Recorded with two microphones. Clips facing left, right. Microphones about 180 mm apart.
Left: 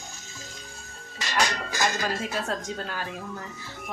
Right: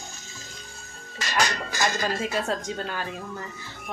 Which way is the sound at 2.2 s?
Centre (ahead or behind).